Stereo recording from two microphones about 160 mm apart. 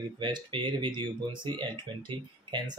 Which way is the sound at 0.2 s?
30° right (ahead or behind).